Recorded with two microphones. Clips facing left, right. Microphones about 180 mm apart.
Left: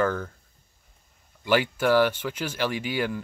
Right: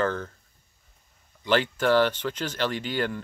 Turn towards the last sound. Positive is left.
turn(degrees=10)  # may be behind; listen again after turning